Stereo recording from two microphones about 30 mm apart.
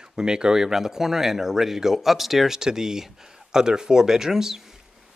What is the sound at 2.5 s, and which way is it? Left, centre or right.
Speech, centre.